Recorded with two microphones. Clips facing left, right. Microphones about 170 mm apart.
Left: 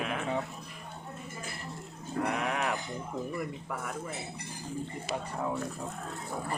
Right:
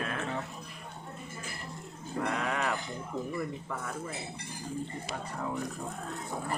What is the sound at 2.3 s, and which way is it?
Speech, 20° left (ahead or behind).